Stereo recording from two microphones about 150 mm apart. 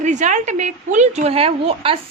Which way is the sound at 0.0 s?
55° right (ahead or behind).